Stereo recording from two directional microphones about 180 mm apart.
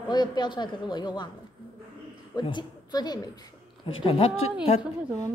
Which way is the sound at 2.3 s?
25° left (ahead or behind).